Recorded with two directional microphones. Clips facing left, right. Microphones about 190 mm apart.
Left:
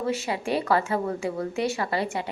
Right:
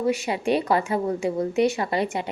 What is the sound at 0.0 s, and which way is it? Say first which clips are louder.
A woman's voice: right 4 dB; 15° right (ahead or behind).